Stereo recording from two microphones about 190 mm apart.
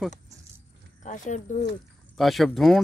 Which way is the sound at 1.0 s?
40° left (ahead or behind).